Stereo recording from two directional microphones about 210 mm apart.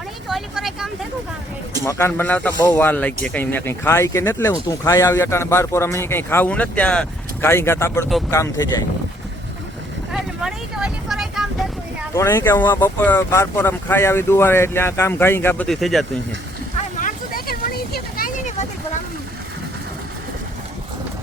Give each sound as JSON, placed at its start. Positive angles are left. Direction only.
{"t": 0.3, "sound": "vehicle", "side_deg": 0}
{"t": 1.8, "sound": "speech", "side_deg": 15}
{"t": 10.1, "sound": "vehicle", "side_deg": -5}
{"t": 12.1, "sound": "speech", "side_deg": 15}
{"t": 17.0, "sound": "vehicle", "side_deg": 40}